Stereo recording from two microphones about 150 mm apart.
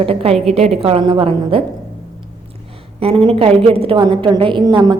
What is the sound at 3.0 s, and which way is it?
A woman's voice, 40° right (ahead or behind).